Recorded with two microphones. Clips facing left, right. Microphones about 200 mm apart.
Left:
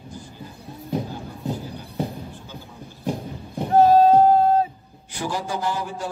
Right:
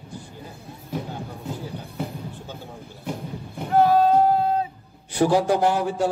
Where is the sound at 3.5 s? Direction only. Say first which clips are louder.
Left 3 dB; 40° left (ahead or behind).